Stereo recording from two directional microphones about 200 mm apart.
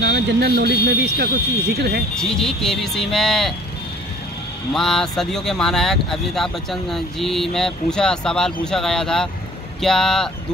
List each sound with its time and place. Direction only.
0.0 s speech: 55° right (ahead or behind)
2.1 s speech: centre (ahead or behind)
4.7 s speech: centre (ahead or behind)